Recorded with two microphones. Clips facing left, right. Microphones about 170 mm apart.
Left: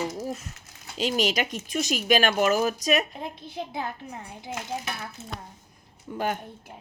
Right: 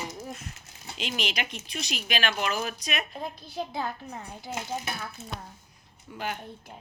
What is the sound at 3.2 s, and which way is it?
Speech, 20° left (ahead or behind).